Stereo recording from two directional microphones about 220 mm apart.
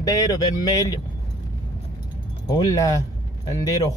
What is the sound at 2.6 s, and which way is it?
Speech, 15° left (ahead or behind).